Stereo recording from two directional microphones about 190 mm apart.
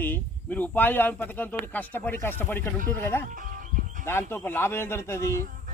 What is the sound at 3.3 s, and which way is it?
Music, 45° right (ahead or behind).